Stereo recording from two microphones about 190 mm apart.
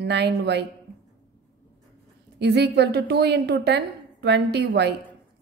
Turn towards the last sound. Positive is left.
turn(degrees=-65)  # may be behind; listen again after turning